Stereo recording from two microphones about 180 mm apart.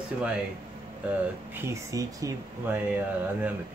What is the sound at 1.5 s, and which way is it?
Speech, 15° right (ahead or behind).